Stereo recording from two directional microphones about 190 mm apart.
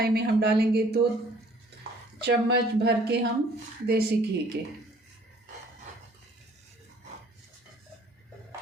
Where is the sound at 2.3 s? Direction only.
60° right (ahead or behind).